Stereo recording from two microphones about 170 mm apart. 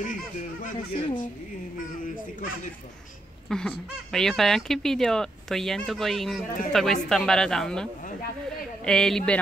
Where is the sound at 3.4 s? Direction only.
5° left (ahead or behind).